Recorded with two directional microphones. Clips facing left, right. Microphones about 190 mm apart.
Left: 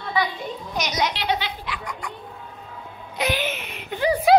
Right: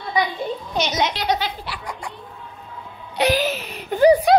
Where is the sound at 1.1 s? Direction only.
40° right (ahead or behind).